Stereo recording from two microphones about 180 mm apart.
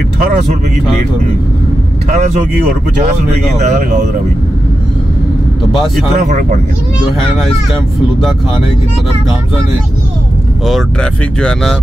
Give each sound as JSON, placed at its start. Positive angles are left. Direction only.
{"t": 3.5, "sound": "speech", "side_deg": -40}
{"t": 6.1, "sound": "speech", "side_deg": -40}
{"t": 10.7, "sound": "speech", "side_deg": 5}